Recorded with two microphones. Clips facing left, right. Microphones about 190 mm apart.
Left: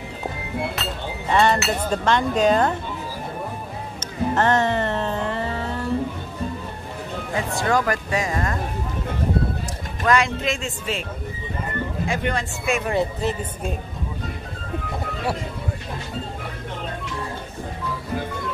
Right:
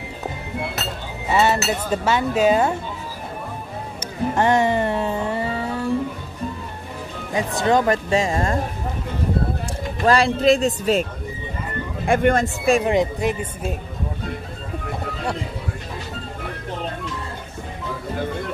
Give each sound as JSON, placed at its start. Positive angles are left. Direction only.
{"t": 1.3, "sound": "speech", "side_deg": -5}
{"t": 4.0, "sound": "music", "side_deg": -10}
{"t": 7.3, "sound": "speech", "side_deg": -20}
{"t": 10.0, "sound": "speech", "side_deg": -35}
{"t": 12.1, "sound": "speech", "side_deg": -50}
{"t": 12.8, "sound": "speech", "side_deg": -15}